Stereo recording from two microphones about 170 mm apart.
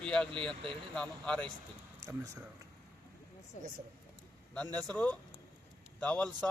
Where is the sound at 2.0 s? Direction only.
20° right (ahead or behind).